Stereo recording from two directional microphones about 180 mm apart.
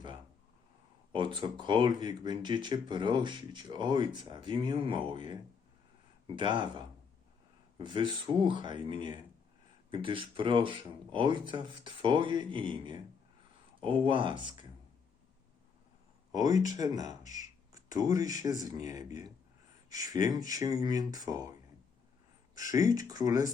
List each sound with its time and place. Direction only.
1.1 s speech: 25° right (ahead or behind)
16.3 s speech: 20° right (ahead or behind)
22.5 s speech: 20° right (ahead or behind)